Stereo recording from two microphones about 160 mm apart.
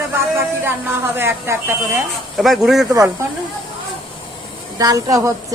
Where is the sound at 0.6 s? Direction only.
15° right (ahead or behind).